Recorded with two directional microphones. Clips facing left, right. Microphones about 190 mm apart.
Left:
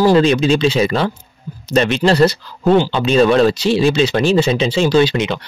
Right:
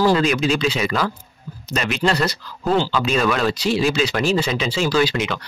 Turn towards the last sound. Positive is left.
turn(degrees=25)  # may be behind; listen again after turning